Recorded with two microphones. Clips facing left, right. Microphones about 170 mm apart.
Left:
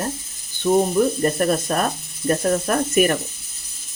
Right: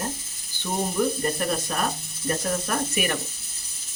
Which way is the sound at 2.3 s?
50° left (ahead or behind).